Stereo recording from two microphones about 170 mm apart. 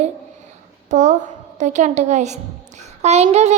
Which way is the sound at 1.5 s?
45° right (ahead or behind).